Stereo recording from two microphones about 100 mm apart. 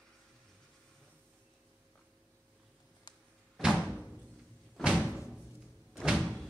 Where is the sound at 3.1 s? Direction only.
45° left (ahead or behind).